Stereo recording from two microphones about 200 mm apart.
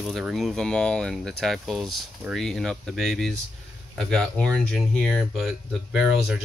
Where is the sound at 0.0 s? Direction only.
Centre (ahead or behind).